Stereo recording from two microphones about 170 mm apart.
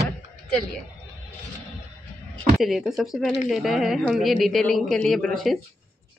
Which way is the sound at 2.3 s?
Centre (ahead or behind).